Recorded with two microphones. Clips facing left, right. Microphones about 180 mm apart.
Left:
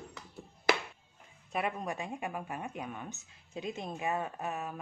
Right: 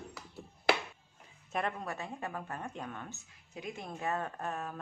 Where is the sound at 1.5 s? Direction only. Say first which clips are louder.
Left 1 dB; 5° left (ahead or behind).